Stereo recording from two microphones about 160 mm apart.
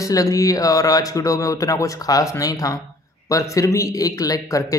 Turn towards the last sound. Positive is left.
turn(degrees=20)  # may be behind; listen again after turning